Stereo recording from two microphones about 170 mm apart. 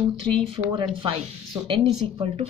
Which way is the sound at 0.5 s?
25° right (ahead or behind).